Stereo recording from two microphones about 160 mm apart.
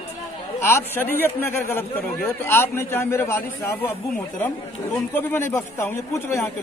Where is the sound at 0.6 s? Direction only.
15° left (ahead or behind).